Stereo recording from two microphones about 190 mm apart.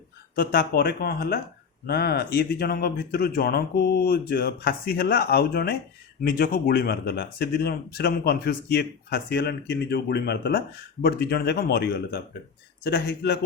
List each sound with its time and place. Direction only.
0.3 s speech: 55° left (ahead or behind)